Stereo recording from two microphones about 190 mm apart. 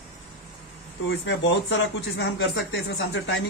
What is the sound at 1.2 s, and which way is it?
Speech, 70° left (ahead or behind).